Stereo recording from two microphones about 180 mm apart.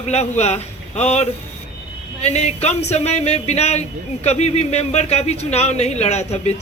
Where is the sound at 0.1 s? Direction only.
35° left (ahead or behind).